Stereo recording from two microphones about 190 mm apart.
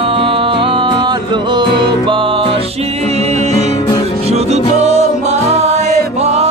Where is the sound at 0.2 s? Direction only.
25° right (ahead or behind).